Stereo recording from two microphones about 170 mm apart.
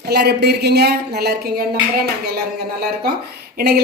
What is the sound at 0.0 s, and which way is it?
A woman's voice, 70° right (ahead or behind).